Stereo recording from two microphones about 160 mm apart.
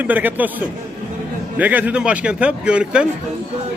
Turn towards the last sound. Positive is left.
turn(degrees=-5)  # may be behind; listen again after turning